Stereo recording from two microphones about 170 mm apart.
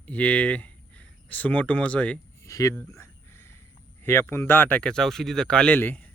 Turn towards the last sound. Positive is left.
turn(degrees=10)  # may be behind; listen again after turning